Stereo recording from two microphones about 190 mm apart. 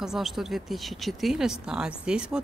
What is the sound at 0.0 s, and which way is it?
Speech, centre (ahead or behind).